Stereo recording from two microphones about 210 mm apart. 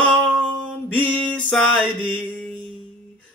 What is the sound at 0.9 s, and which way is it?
Mantra, 5° left (ahead or behind).